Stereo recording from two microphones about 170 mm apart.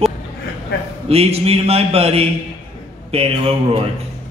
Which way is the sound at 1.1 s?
35° right (ahead or behind).